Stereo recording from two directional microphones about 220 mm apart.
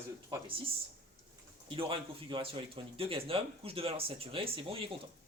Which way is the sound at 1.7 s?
25° right (ahead or behind).